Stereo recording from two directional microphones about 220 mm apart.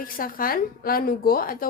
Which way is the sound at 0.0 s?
40° left (ahead or behind).